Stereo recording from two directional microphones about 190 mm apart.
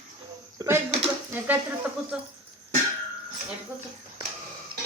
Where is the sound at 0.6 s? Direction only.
15° right (ahead or behind).